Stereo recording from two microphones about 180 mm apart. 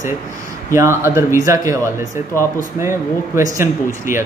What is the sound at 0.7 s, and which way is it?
Speech, 15° right (ahead or behind).